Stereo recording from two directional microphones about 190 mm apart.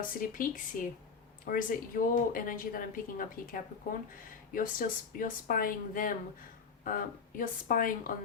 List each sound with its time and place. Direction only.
0.2 s speech: 45° left (ahead or behind)